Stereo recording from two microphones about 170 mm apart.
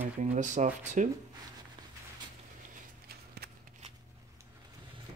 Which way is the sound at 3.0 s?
65° right (ahead or behind).